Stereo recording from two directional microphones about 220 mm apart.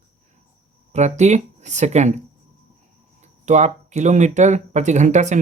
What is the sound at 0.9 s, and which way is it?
Speech, 30° right (ahead or behind).